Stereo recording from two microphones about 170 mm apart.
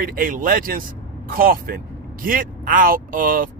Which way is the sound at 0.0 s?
55° right (ahead or behind).